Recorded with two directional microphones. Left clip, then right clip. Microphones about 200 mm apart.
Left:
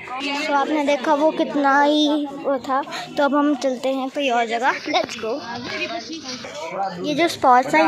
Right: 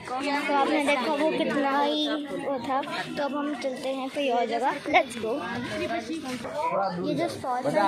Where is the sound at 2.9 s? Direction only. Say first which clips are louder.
Left 9 dB; 45° left (ahead or behind).